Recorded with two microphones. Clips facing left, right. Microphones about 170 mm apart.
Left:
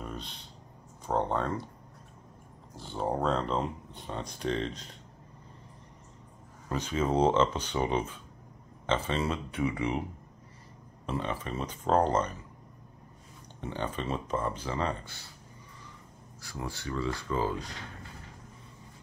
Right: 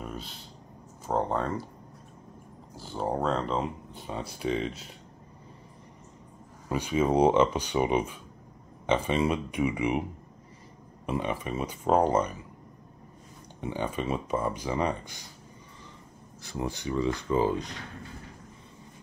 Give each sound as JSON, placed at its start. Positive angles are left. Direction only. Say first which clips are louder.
{"t": 0.0, "sound": "a sound", "louder": "right 2 dB", "side_deg": -5}
{"t": 1.0, "sound": "speech", "louder": "right 1 dB", "side_deg": -5}
{"t": 2.7, "sound": "speech", "louder": "right 1 dB", "side_deg": 0}
{"t": 6.7, "sound": "speech", "louder": "right 4 dB", "side_deg": -10}
{"t": 11.1, "sound": "speech", "louder": "right 3 dB", "side_deg": -15}
{"t": 13.6, "sound": "speech", "louder": "right 3 dB", "side_deg": -10}
{"t": 16.4, "sound": "speech", "louder": "right 5 dB", "side_deg": -20}